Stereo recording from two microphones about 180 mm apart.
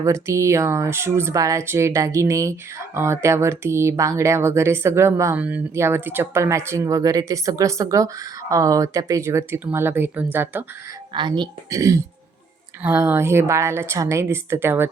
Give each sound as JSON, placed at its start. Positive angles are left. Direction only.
{"t": 0.0, "sound": "speech", "side_deg": -15}
{"t": 11.1, "sound": "speech", "side_deg": -25}